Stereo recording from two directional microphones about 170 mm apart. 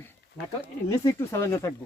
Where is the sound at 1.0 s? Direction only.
15° left (ahead or behind).